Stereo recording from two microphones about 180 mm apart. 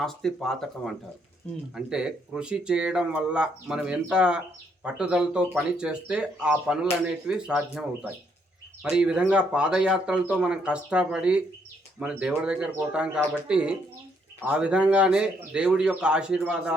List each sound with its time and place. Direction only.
0.0 s speech: centre (ahead or behind)